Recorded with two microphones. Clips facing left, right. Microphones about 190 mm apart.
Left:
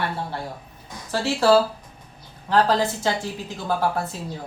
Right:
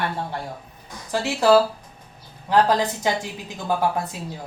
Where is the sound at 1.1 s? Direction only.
15° right (ahead or behind).